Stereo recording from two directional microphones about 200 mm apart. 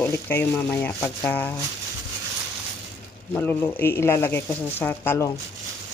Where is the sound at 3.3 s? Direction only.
10° left (ahead or behind).